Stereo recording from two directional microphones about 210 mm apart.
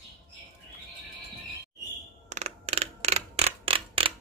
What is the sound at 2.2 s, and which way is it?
Mechanisms, 30° right (ahead or behind).